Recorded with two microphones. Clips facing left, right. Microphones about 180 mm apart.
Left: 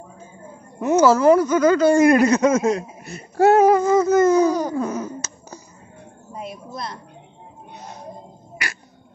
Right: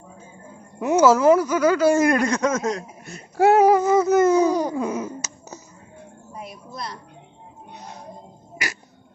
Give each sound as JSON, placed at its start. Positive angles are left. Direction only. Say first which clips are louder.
{"t": 0.7, "sound": "speech", "louder": "left 1 dB", "side_deg": -10}
{"t": 3.3, "sound": "a sound", "louder": "left 1 dB", "side_deg": -10}
{"t": 6.3, "sound": "a woman's voice", "louder": "left 4 dB", "side_deg": 25}